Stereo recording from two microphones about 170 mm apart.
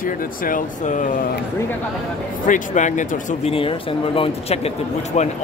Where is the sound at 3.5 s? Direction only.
30° left (ahead or behind).